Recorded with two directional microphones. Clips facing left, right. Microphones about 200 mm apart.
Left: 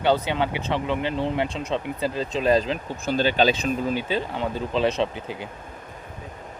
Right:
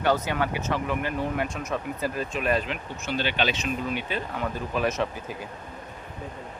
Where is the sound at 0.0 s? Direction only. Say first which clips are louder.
Left 3 dB; 25° left (ahead or behind).